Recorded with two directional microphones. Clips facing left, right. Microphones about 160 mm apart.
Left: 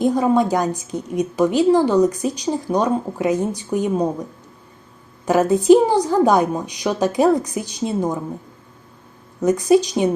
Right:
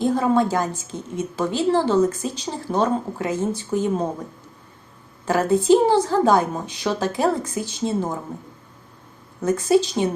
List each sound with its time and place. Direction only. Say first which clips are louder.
0.0 s a woman's voice: left 2 dB; 15° left (ahead or behind)
5.2 s a woman's voice: left 3 dB; 20° left (ahead or behind)
9.4 s a woman's voice: left 3 dB; 15° left (ahead or behind)